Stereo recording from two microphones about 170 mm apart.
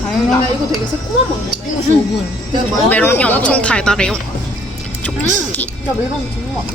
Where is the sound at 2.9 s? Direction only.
10° left (ahead or behind).